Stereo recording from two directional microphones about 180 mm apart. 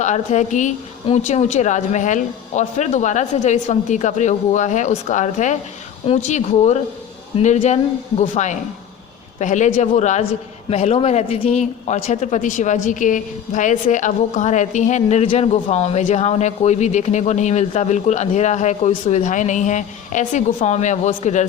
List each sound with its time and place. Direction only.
0.0 s speech: 40° left (ahead or behind)